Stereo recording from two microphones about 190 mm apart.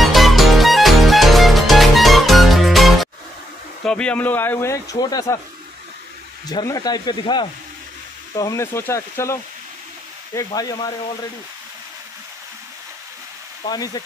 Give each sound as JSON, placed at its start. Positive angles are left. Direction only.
{"t": 0.0, "sound": "music", "side_deg": 0}
{"t": 3.8, "sound": "speech", "side_deg": 5}
{"t": 6.5, "sound": "speech", "side_deg": 20}
{"t": 13.7, "sound": "speech", "side_deg": 20}